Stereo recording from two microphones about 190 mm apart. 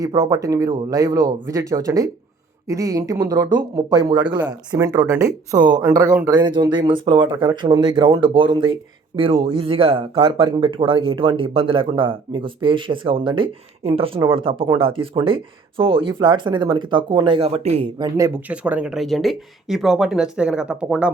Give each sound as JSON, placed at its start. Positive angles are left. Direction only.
{"t": 0.0, "sound": "speech", "side_deg": -15}
{"t": 18.0, "sound": "speech", "side_deg": -15}